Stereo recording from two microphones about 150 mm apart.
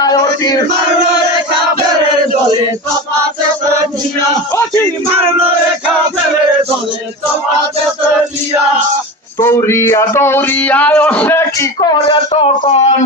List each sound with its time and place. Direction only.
0.0 s a sound: 25° left (ahead or behind)
9.4 s music: 15° left (ahead or behind)
11.8 s speech: 30° left (ahead or behind)
12.3 s speech: 40° left (ahead or behind)